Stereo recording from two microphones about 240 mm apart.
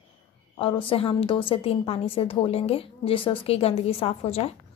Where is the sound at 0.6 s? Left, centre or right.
Left.